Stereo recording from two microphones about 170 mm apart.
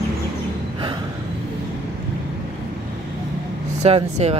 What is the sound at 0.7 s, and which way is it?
Gasp, 30° right (ahead or behind).